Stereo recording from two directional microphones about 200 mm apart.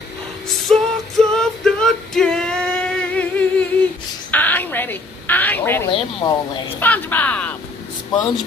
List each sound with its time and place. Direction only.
0.7 s music: centre (ahead or behind)
4.3 s a sound: 10° left (ahead or behind)
5.9 s speech: 25° left (ahead or behind)
6.8 s speech: 10° left (ahead or behind)